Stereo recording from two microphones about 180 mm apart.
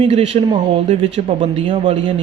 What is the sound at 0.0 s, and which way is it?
A man's voice, 30° right (ahead or behind).